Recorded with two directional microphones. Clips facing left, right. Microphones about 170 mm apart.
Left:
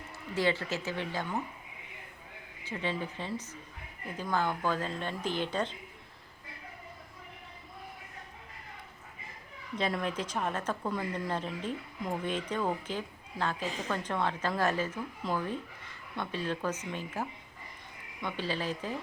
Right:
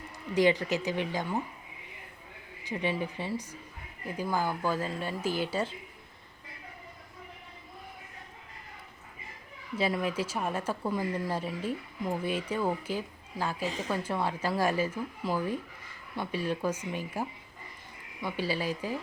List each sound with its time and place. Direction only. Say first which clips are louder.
0.3 s speech: right 5 dB; 15° right (ahead or behind)
2.6 s speech: right 3 dB; 15° right (ahead or behind)
9.7 s speech: right 3 dB; 5° right (ahead or behind)